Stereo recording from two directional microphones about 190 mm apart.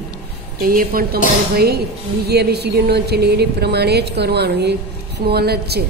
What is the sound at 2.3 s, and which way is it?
A woman's voice, 60° right (ahead or behind).